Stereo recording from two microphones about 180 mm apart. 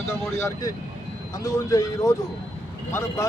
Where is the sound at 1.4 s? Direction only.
20° left (ahead or behind).